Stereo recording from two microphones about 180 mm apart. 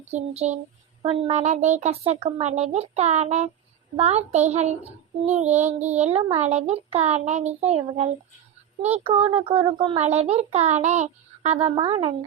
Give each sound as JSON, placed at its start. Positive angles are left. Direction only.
{"t": 0.1, "sound": "a child's voice", "side_deg": -40}